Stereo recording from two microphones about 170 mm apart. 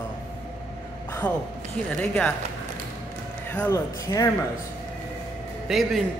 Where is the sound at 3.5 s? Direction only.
15° left (ahead or behind).